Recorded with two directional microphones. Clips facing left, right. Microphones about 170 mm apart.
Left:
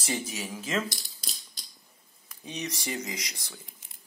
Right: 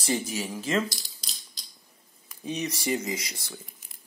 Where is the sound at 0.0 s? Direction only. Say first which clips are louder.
Right 4 dB; centre (ahead or behind).